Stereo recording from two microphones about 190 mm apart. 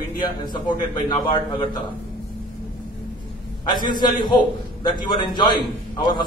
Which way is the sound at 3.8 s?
25° left (ahead or behind).